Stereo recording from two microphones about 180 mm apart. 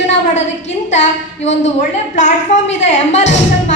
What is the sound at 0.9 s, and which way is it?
Speech, 40° left (ahead or behind).